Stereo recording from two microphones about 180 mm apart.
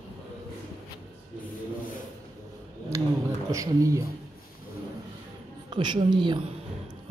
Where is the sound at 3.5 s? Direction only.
15° right (ahead or behind).